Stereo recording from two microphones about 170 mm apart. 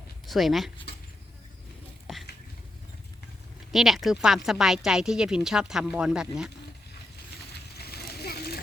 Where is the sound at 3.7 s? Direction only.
Centre (ahead or behind).